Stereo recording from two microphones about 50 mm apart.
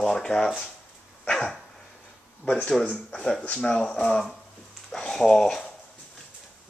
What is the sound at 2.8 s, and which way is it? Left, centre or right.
Speech, centre.